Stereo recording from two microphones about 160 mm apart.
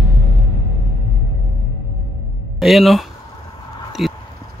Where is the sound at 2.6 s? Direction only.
Centre (ahead or behind).